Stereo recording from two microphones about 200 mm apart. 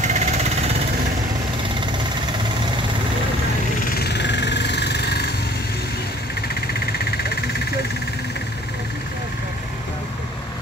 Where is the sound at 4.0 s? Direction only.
55° left (ahead or behind).